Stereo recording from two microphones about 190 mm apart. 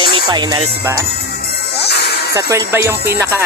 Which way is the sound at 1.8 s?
60° left (ahead or behind).